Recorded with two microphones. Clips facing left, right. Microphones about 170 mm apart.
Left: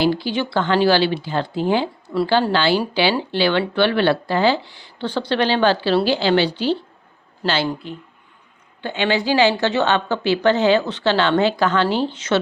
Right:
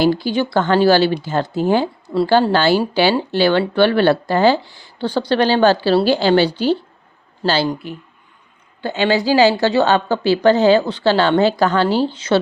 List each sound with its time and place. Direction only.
0.0 s speech: 45° right (ahead or behind)
7.4 s a woman's voice: 35° right (ahead or behind)
8.8 s a woman's voice: 40° right (ahead or behind)